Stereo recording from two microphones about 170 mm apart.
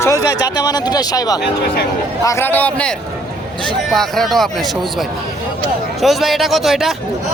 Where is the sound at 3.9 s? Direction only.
Centre (ahead or behind).